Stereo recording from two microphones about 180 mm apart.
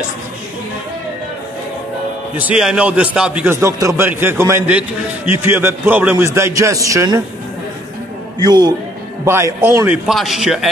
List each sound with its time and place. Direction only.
2.3 s a man's voice: 5° right (ahead or behind)
8.4 s a man's voice: 20° right (ahead or behind); by 10.7 s centre (ahead or behind)